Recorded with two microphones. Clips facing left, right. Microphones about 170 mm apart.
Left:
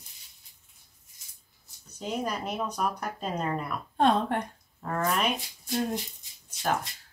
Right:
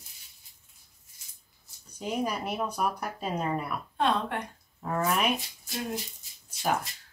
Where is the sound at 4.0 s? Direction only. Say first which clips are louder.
Left 4 dB; 45° left (ahead or behind).